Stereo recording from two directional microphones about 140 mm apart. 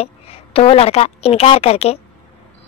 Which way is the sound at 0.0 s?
45° left (ahead or behind).